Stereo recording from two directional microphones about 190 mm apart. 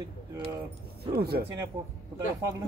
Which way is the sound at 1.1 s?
55° right (ahead or behind).